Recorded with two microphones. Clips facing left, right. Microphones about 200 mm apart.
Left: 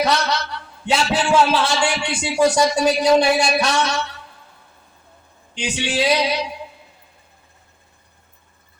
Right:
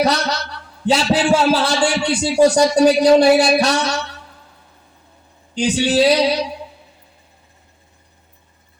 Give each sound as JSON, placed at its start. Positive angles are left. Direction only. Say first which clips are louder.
{"t": 0.0, "sound": "a sound", "louder": "right 2 dB", "side_deg": -35}
{"t": 0.9, "sound": "a man's voice", "louder": "right 4 dB", "side_deg": -35}
{"t": 5.5, "sound": "a man's voice", "louder": "right 7 dB", "side_deg": -35}